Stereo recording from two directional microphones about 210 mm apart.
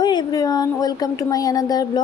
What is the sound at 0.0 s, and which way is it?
Speech, 20° left (ahead or behind).